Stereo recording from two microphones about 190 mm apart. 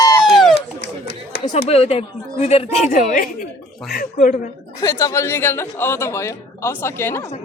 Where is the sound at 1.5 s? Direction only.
30° left (ahead or behind); by 4.4 s 50° left (ahead or behind).